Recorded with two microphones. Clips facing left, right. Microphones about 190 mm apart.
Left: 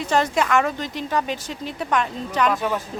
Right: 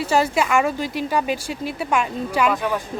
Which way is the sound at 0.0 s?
10° right (ahead or behind).